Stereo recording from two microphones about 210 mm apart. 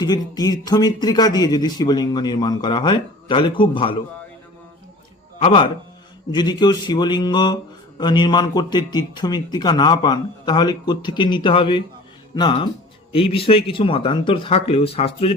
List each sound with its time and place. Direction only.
0.0 s speech: 20° left (ahead or behind)
5.4 s speech: 25° left (ahead or behind)